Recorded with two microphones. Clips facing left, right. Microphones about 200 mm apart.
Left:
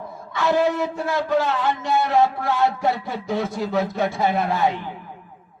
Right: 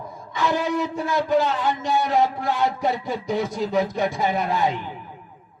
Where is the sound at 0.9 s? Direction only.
15° right (ahead or behind).